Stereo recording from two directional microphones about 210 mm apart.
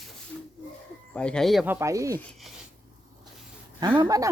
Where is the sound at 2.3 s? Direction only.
Centre (ahead or behind).